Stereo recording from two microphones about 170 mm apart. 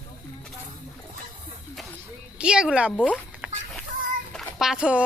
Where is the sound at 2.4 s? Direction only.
5° right (ahead or behind).